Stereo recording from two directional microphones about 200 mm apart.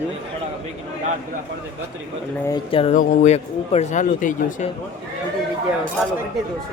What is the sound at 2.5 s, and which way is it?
Speech, 25° left (ahead or behind).